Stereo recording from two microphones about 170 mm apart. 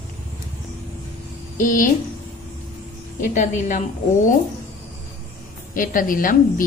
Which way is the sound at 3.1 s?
45° left (ahead or behind).